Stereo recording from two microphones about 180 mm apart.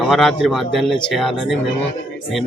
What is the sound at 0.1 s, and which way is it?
A man's voice, centre (ahead or behind).